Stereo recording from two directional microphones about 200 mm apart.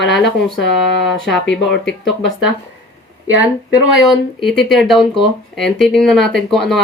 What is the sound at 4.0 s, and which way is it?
Speech, centre (ahead or behind).